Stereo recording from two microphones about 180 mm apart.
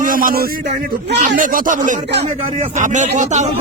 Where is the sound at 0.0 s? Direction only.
50° right (ahead or behind).